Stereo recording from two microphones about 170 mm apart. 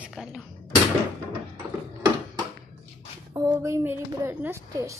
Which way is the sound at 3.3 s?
20° right (ahead or behind).